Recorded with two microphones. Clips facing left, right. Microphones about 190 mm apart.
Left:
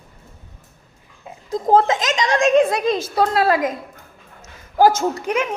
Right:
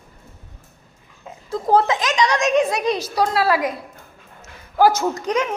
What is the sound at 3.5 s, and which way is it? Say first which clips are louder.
Speech: left 1 dB; 20° left (ahead or behind).